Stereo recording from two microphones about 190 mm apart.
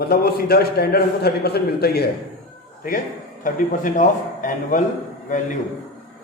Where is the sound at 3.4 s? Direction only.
45° left (ahead or behind).